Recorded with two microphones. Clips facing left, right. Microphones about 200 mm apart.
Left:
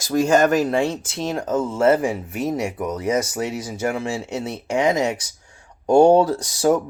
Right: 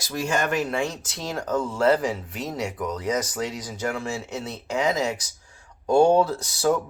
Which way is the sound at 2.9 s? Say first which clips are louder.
Left 5 dB; 25° left (ahead or behind).